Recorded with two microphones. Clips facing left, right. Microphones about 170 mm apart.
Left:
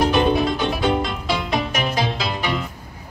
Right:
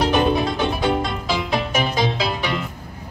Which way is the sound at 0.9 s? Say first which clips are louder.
Even; centre (ahead or behind).